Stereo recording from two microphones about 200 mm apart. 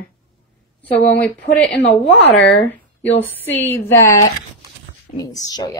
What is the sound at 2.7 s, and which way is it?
A woman's voice, 10° left (ahead or behind).